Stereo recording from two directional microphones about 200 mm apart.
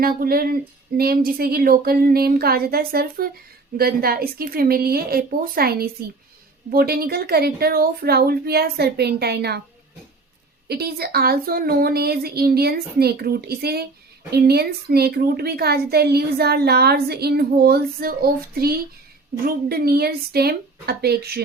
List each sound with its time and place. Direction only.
0.0 s a woman's voice: 50° right (ahead or behind)
10.7 s a woman's voice: 50° right (ahead or behind)